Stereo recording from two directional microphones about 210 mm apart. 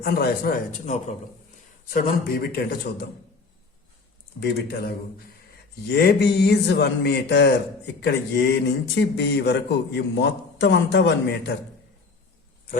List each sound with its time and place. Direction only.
0.0 s speech: 45° left (ahead or behind)
0.9 s a man's voice: 35° left (ahead or behind)
4.4 s speech: 50° left (ahead or behind)
5.9 s speech: 50° left (ahead or behind)